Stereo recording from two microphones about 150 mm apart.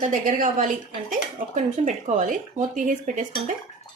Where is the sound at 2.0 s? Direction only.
55° right (ahead or behind).